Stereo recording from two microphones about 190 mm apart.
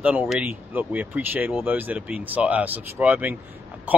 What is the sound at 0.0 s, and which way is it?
Speech, 10° right (ahead or behind).